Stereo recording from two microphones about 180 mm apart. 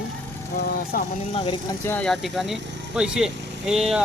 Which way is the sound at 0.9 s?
55° left (ahead or behind).